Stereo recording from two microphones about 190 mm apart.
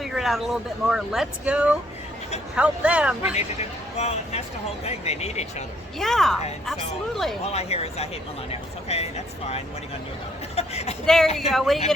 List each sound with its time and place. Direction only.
0.0 s speech: centre (ahead or behind)
3.9 s speech: 35° left (ahead or behind)
6.0 s speech: centre (ahead or behind)
7.4 s speech: 35° left (ahead or behind)
11.0 s speech: centre (ahead or behind)